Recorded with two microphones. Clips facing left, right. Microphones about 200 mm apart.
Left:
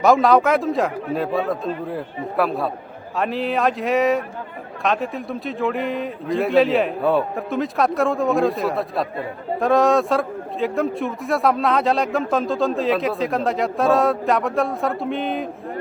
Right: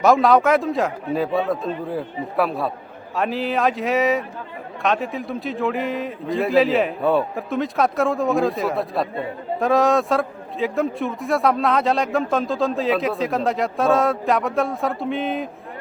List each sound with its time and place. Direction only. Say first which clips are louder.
0.0 s a man's voice: even; centre (ahead or behind)